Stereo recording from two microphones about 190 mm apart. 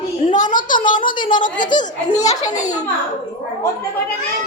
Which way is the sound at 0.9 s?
25° left (ahead or behind).